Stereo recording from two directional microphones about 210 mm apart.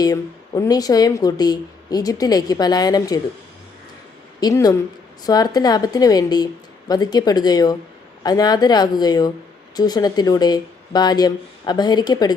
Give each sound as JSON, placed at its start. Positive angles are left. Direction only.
{"t": 0.0, "sound": "speech", "side_deg": 15}
{"t": 4.4, "sound": "a woman's voice", "side_deg": 20}